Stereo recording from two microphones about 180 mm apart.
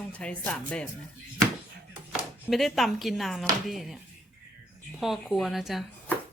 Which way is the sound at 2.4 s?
Centre (ahead or behind).